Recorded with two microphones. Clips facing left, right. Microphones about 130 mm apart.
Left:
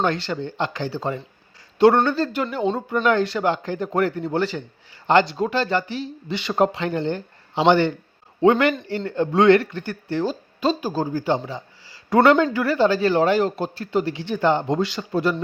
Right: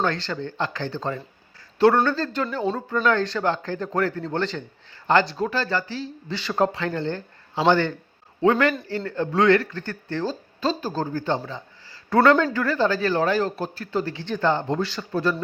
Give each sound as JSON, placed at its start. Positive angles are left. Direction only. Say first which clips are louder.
{"t": 0.0, "sound": "a man's voice", "louder": "left 2 dB", "side_deg": 15}
{"t": 11.4, "sound": "a sound", "louder": "left 3 dB", "side_deg": 15}
{"t": 12.5, "sound": "speech", "louder": "left 3 dB", "side_deg": 15}